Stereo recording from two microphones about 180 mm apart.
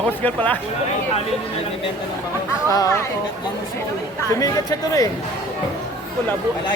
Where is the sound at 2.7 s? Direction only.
20° left (ahead or behind).